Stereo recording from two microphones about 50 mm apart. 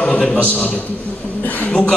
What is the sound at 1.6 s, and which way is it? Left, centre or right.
Speech, left.